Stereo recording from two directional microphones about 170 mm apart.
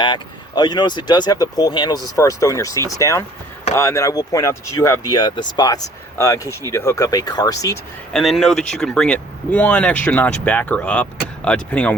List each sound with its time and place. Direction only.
0.0 s speech: 25° left (ahead or behind)
8.1 s speech: centre (ahead or behind)